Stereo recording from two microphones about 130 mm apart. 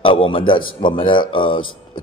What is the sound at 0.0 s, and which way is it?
A man's voice, 45° left (ahead or behind).